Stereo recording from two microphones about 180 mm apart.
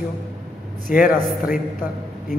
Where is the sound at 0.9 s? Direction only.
50° left (ahead or behind).